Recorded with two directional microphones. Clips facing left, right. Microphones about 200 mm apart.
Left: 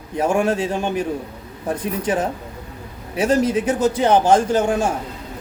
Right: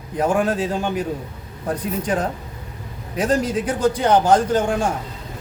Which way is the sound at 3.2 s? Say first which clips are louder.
Left 2 dB; 10° left (ahead or behind).